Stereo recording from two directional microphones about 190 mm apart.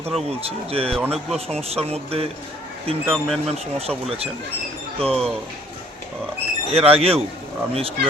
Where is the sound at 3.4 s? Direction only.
35° right (ahead or behind).